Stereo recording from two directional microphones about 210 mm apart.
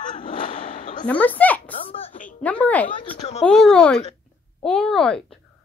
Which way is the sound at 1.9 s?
25° left (ahead or behind).